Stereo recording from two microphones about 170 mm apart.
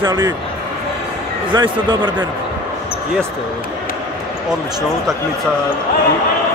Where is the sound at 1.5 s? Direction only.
30° right (ahead or behind).